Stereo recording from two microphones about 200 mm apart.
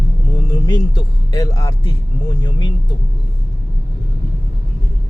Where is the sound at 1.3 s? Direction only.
15° left (ahead or behind).